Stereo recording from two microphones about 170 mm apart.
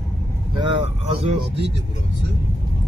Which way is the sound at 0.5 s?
30° right (ahead or behind).